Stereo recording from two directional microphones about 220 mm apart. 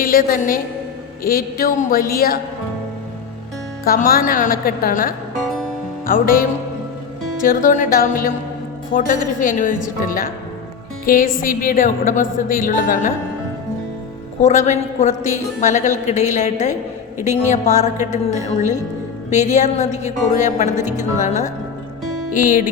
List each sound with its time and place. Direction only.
0.0 s a woman's voice: 40° left (ahead or behind)
3.8 s a woman's voice: 40° left (ahead or behind)
7.4 s a woman's voice: 40° left (ahead or behind)
14.4 s a woman's voice: 30° left (ahead or behind)
19.3 s a woman's voice: 30° left (ahead or behind)